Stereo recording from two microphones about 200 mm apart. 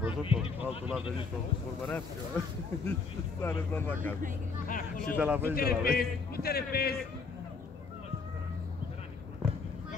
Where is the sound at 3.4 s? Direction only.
10° left (ahead or behind).